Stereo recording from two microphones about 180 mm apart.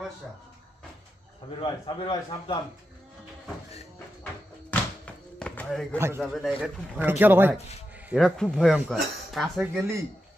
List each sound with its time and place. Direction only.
1.6 s a man's voice: 30° left (ahead or behind)
4.6 s thunk: 5° left (ahead or behind)
5.9 s a man's voice: 15° right (ahead or behind)
6.2 s a man's voice: centre (ahead or behind)
8.1 s speech: centre (ahead or behind)